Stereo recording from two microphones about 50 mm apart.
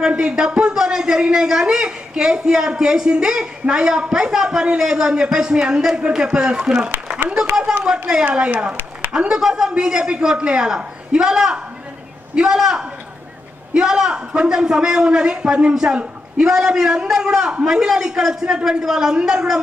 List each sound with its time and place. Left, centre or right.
0.0 s a woman's voice: centre
9.1 s a woman's voice: centre